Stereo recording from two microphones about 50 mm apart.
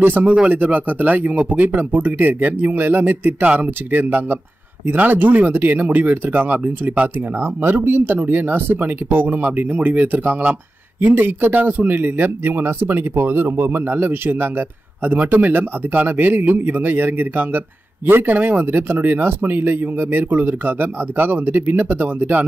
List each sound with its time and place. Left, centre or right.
0.0 s speech: right
7.3 s a man's voice: right
11.0 s a man's voice: right